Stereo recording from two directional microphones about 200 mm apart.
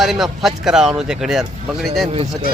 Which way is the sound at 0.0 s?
Centre (ahead or behind).